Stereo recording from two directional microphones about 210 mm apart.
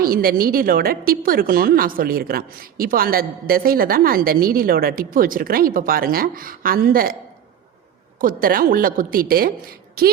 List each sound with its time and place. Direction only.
0.0 s a woman's voice: 45° right (ahead or behind)
8.2 s a woman's voice: 45° right (ahead or behind)